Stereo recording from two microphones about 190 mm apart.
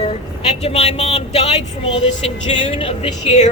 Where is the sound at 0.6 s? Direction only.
35° left (ahead or behind).